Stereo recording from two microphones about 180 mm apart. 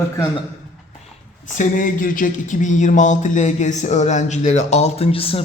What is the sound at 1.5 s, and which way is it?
A man's voice, 45° left (ahead or behind).